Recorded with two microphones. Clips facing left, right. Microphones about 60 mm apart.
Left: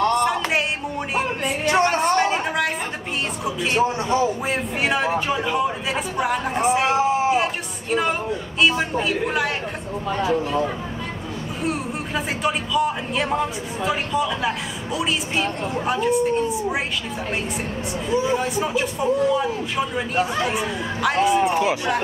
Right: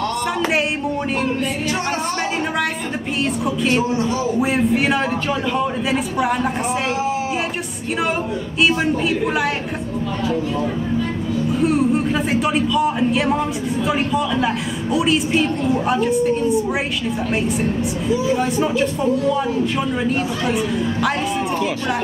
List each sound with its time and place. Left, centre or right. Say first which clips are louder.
0.2 s music: right 1 dB; centre
1.4 s music: left 3 dB; left
2.1 s a sound: left 1 dB; centre
3.4 s speech: even; centre
10.2 s speech: left 1 dB; left
11.6 s speech: right 8 dB; centre
18.4 s speech: right 4 dB; centre